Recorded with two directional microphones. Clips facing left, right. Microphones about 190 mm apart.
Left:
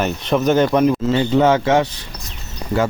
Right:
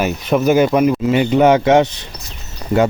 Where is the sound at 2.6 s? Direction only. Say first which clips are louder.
Right 4 dB; 15° left (ahead or behind).